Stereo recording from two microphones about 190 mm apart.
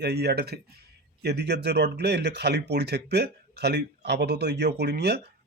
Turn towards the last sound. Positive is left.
turn(degrees=-60)  # may be behind; listen again after turning